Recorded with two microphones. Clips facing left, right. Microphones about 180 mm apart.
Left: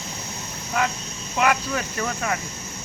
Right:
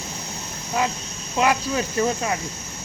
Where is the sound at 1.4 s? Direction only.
25° right (ahead or behind).